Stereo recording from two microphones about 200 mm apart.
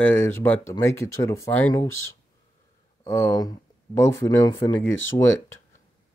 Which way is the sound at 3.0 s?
20° left (ahead or behind).